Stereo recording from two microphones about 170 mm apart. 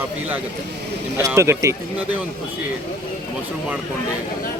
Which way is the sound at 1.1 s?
15° right (ahead or behind).